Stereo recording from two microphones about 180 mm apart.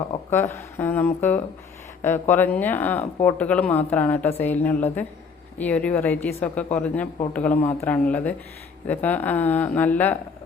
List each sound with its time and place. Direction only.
0.3 s a woman's voice: 15° left (ahead or behind)